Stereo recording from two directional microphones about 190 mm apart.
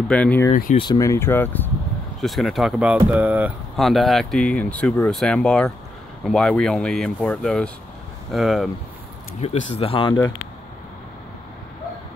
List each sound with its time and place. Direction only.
0.1 s speech: 5° left (ahead or behind)
0.7 s speech: 20° left (ahead or behind)
2.2 s speech: centre (ahead or behind)
9.4 s speech: 30° left (ahead or behind)